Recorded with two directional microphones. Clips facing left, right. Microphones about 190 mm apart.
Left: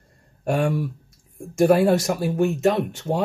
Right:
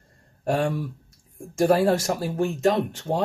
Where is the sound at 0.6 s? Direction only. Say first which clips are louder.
Left 2 dB; 10° left (ahead or behind).